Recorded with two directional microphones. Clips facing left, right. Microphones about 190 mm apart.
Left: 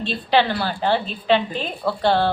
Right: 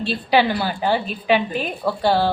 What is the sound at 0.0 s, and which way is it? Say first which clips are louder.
A woman's voice: right 1 dB; 10° right (ahead or behind).